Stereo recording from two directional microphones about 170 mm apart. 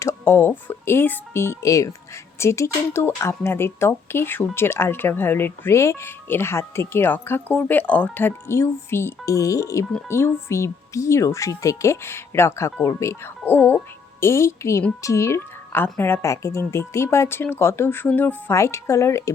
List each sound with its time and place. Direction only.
0.0 s speech: 15° left (ahead or behind)